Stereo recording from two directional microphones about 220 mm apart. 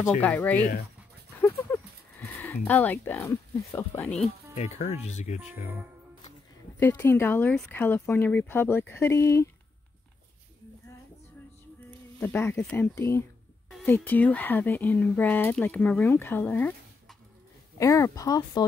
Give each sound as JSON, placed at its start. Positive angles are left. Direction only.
{"t": 0.2, "sound": "speech", "side_deg": 5}
{"t": 0.6, "sound": "speech", "side_deg": 40}
{"t": 1.4, "sound": "a sound", "side_deg": 10}
{"t": 4.6, "sound": "speech", "side_deg": 30}
{"t": 6.8, "sound": "speech", "side_deg": 10}
{"t": 12.2, "sound": "speech", "side_deg": 10}